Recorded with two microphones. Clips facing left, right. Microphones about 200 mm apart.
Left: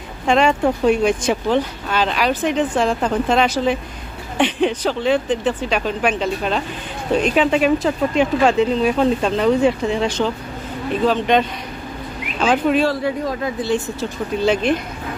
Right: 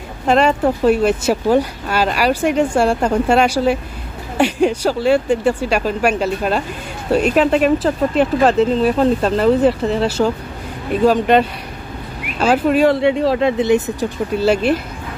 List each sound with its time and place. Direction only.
0.3 s speech: 5° right (ahead or behind)
12.8 s speech: 25° right (ahead or behind)
14.4 s speech: 5° right (ahead or behind)